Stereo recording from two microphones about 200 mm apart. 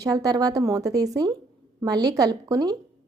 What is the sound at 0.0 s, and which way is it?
A woman's voice, 15° right (ahead or behind).